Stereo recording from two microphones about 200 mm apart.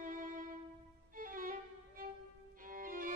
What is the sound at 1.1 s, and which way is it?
Violin, 45° right (ahead or behind).